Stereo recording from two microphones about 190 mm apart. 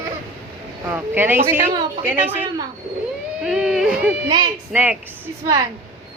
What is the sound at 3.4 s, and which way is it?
Speech, 5° right (ahead or behind).